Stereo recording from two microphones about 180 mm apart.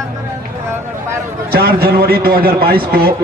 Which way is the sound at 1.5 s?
60° right (ahead or behind).